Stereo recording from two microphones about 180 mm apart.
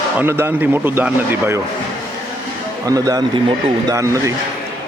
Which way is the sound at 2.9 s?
20° right (ahead or behind).